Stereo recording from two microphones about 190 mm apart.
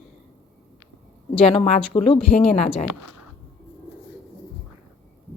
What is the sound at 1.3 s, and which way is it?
Speech, 30° left (ahead or behind).